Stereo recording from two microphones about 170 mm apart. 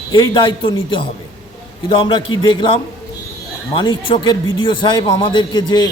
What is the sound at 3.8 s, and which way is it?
A man's voice, 30° left (ahead or behind).